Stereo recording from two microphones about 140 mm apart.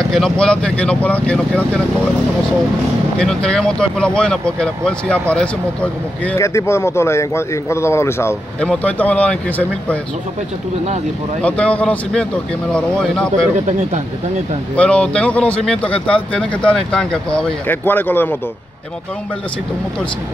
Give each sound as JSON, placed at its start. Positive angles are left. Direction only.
{"t": 0.1, "sound": "speech", "side_deg": 5}
{"t": 3.2, "sound": "speech", "side_deg": 5}
{"t": 6.3, "sound": "speech", "side_deg": 20}
{"t": 11.4, "sound": "speech", "side_deg": 10}
{"t": 14.8, "sound": "speech", "side_deg": 10}